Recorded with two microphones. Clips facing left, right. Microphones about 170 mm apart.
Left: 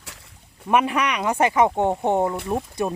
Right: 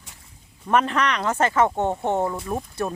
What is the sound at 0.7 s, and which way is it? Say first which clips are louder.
Speech: left 1 dB; 10° left (ahead or behind).